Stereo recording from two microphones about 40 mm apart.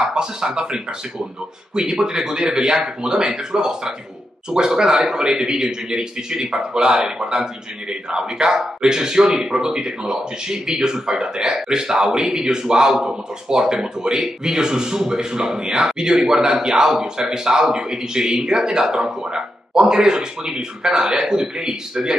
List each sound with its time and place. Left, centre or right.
0.0 s a man's voice: centre